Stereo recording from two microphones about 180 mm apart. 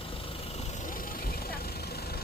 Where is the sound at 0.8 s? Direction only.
50° left (ahead or behind).